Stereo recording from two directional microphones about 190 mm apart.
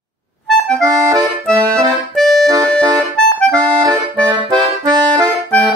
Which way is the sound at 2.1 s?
Centre (ahead or behind).